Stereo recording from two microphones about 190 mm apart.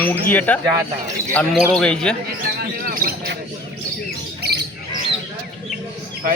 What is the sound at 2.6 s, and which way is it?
Speech, 50° right (ahead or behind).